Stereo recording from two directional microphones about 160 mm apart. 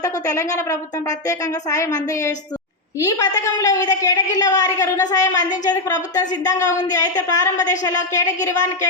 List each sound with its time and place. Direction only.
0.0 s a woman's voice: 20° left (ahead or behind)